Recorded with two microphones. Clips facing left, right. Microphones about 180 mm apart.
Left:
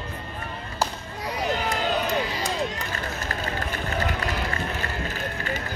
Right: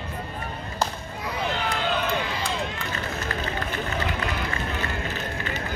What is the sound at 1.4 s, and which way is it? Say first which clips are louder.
Run: left 2 dB; 40° left (ahead or behind).